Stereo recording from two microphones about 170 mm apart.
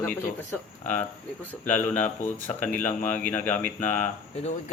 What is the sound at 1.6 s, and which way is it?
Speech, 10° left (ahead or behind).